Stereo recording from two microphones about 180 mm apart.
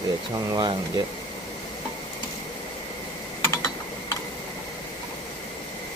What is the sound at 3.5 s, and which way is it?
Tick-tock, 15° left (ahead or behind).